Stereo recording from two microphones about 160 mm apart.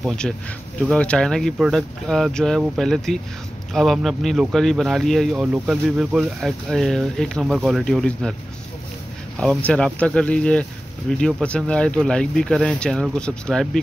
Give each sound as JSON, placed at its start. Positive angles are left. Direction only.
{"t": 0.0, "sound": "speech", "side_deg": 5}
{"t": 9.4, "sound": "speech", "side_deg": 10}